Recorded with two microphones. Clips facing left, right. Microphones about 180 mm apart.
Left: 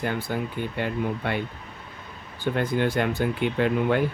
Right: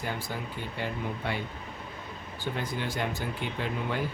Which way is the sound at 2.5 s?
60° left (ahead or behind).